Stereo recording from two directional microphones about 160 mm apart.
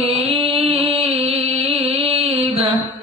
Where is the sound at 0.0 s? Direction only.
40° right (ahead or behind).